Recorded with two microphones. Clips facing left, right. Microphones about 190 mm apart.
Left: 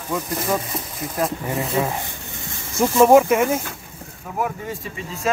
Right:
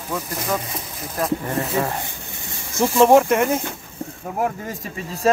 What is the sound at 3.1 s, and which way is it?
Speech, 5° left (ahead or behind).